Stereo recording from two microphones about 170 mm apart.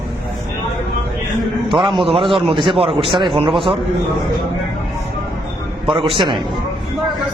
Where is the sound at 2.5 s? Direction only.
30° right (ahead or behind).